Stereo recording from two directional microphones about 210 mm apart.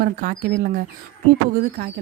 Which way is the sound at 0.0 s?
40° right (ahead or behind).